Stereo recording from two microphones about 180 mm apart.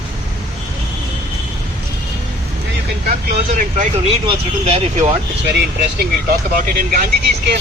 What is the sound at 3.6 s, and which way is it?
Speech, 40° right (ahead or behind).